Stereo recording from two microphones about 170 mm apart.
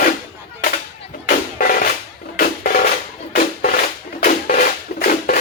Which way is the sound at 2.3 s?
60° left (ahead or behind).